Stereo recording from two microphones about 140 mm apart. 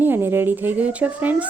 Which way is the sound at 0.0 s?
15° right (ahead or behind).